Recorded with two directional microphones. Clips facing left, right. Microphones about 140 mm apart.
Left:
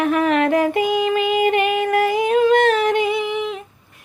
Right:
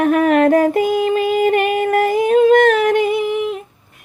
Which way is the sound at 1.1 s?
40° right (ahead or behind).